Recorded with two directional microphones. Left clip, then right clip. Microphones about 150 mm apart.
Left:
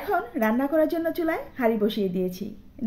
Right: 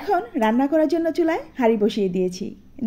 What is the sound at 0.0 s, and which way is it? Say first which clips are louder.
A woman's voice: right 4 dB; 30° right (ahead or behind).